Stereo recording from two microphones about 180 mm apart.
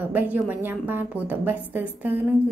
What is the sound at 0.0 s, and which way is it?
A woman's voice, 10° right (ahead or behind).